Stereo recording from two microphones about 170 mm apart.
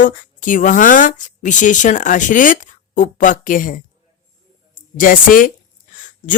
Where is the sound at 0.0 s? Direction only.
50° left (ahead or behind).